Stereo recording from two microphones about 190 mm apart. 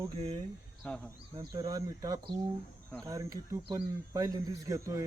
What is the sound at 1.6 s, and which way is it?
Speech, 20° right (ahead or behind).